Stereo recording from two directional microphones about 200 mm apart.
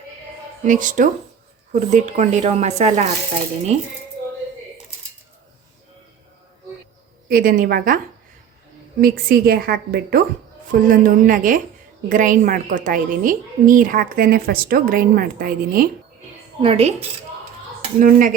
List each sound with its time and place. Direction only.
0.6 s speech: 40° right (ahead or behind)
7.3 s a woman's voice: 45° right (ahead or behind)
16.6 s speech: 30° right (ahead or behind)
18.0 s speech: 40° right (ahead or behind)